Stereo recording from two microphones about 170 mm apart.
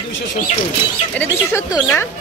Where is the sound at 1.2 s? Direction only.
15° left (ahead or behind).